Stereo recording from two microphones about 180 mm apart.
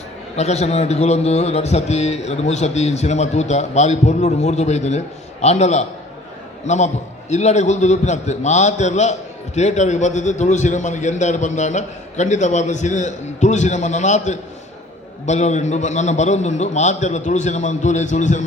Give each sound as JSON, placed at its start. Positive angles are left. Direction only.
{"t": 0.3, "sound": "a man's voice", "side_deg": 40}